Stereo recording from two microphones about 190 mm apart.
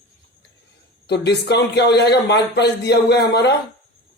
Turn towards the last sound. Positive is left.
turn(degrees=60)  # may be behind; listen again after turning